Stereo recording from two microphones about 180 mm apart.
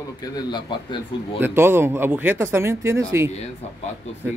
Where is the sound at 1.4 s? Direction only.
15° right (ahead or behind).